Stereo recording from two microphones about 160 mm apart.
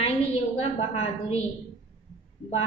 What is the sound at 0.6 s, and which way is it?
Speech, 40° left (ahead or behind).